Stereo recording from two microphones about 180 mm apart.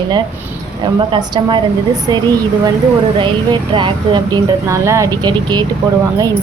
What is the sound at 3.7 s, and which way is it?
Speech, 25° right (ahead or behind).